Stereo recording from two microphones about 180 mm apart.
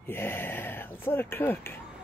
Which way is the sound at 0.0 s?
10° left (ahead or behind).